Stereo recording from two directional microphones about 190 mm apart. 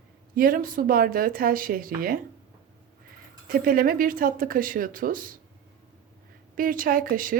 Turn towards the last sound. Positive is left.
turn(degrees=-45)  # may be behind; listen again after turning